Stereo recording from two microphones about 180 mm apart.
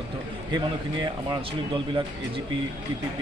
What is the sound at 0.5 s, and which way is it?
Speech, 25° right (ahead or behind).